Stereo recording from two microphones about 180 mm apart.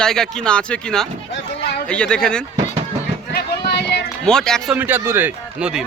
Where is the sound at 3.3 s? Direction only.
65° left (ahead or behind).